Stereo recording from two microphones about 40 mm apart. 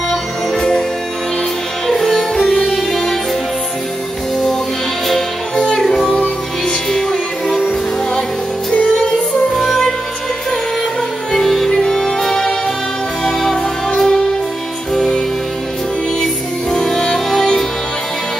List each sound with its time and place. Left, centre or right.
0.1 s music: centre
1.9 s music: centre
6.9 s music: centre
8.7 s music: left
9.6 s music: centre
11.3 s music: centre
13.8 s music: centre
16.7 s music: centre